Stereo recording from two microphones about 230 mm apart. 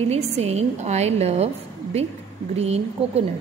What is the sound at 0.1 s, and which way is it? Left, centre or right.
A woman's voice, right.